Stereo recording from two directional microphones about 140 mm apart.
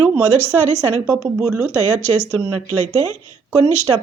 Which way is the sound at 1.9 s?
15° left (ahead or behind).